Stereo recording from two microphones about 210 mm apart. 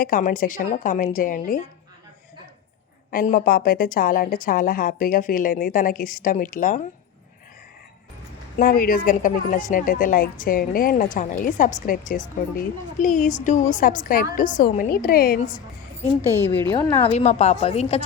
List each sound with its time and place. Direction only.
0.0 s a woman's voice: 40° left (ahead or behind)
3.1 s a woman's voice: 40° left (ahead or behind)
8.5 s a woman's voice: 45° left (ahead or behind)
16.7 s a woman's voice: 10° left (ahead or behind)
17.1 s a woman's voice: 30° left (ahead or behind)